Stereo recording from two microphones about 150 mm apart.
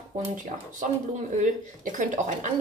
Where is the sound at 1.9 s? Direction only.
55° right (ahead or behind).